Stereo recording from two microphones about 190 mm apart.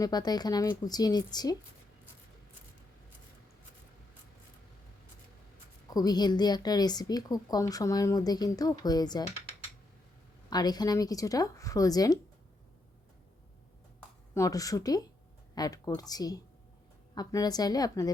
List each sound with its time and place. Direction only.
0.0 s a woman's voice: 20° left (ahead or behind)
5.9 s a woman's voice: 20° left (ahead or behind)
10.5 s a woman's voice: 20° left (ahead or behind)
14.3 s a woman's voice: 20° left (ahead or behind)